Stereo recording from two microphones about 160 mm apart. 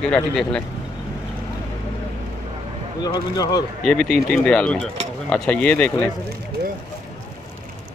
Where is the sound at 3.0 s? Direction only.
25° left (ahead or behind).